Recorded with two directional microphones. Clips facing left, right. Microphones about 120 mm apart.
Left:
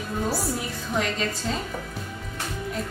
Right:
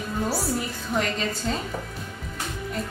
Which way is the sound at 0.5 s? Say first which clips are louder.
Right 1 dB; centre (ahead or behind).